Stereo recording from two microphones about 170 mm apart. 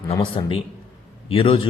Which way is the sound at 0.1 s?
35° left (ahead or behind).